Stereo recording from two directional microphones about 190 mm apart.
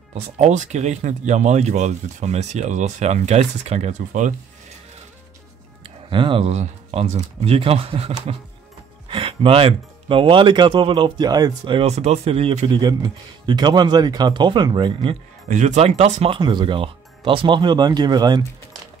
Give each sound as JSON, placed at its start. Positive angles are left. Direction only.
{"t": 0.1, "sound": "speech", "side_deg": -40}
{"t": 6.0, "sound": "speech", "side_deg": -25}
{"t": 15.4, "sound": "speech", "side_deg": -40}